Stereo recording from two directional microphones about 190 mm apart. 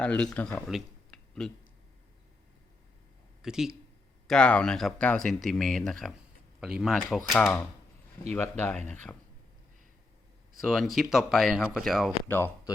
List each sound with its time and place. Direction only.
0.0 s speech: 5° left (ahead or behind)
3.4 s speech: 5° right (ahead or behind)
8.8 s speech: 40° right (ahead or behind)
10.6 s speech: centre (ahead or behind)
12.3 s speech: 10° left (ahead or behind)